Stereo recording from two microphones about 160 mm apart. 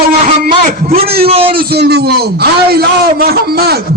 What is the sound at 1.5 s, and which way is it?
A man's voice, 85° right.